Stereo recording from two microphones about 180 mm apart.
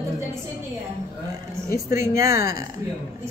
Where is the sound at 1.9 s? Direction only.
15° right (ahead or behind).